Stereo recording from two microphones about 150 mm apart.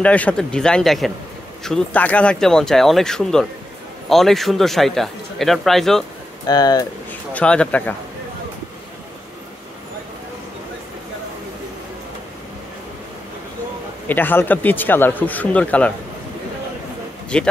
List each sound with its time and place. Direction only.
0.0 s a man's voice: 10° left (ahead or behind)
6.4 s speech: 25° left (ahead or behind)
7.1 s speech: 10° left (ahead or behind)
14.0 s speech: 10° left (ahead or behind)
17.3 s speech: 5° left (ahead or behind)